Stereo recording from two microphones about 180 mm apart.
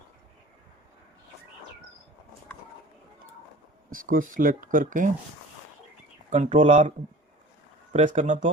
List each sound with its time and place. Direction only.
3.9 s speech: 50° right (ahead or behind)
6.3 s speech: 40° right (ahead or behind)
7.9 s speech: 40° right (ahead or behind)